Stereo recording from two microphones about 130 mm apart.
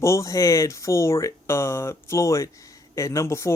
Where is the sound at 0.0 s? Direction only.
25° left (ahead or behind).